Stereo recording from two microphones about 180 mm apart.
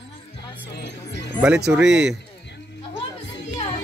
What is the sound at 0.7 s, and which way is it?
Music, 75° left (ahead or behind).